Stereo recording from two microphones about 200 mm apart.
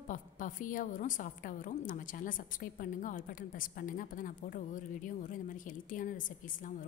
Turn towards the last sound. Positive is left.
turn(degrees=40)  # may be behind; listen again after turning